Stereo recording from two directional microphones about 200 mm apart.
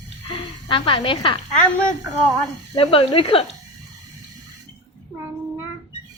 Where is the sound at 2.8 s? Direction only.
25° left (ahead or behind).